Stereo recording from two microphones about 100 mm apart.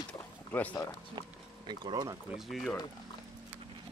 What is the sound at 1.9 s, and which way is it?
Speech, 40° right (ahead or behind).